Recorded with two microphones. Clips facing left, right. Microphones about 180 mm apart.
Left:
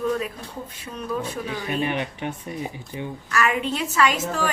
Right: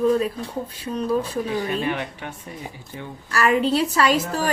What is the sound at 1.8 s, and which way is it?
Speech, 20° left (ahead or behind).